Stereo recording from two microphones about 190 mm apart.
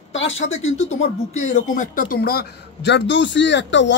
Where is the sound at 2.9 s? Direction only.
65° left (ahead or behind).